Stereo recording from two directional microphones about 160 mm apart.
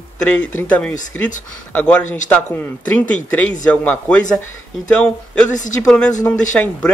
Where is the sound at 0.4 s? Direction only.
10° left (ahead or behind).